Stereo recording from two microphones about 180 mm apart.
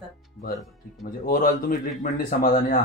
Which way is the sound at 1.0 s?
55° left (ahead or behind).